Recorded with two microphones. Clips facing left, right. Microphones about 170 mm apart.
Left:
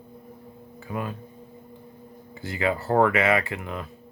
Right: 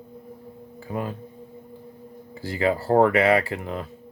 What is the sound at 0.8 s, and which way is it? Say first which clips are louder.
Speech: right 2 dB; 35° right (ahead or behind).